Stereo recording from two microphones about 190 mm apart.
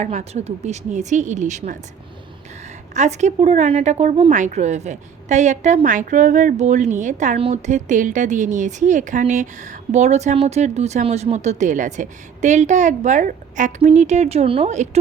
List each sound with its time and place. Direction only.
0.0 s a woman's voice: 40° right (ahead or behind)
2.9 s a woman's voice: 40° right (ahead or behind)